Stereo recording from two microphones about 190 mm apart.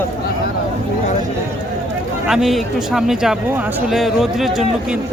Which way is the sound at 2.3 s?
Centre (ahead or behind).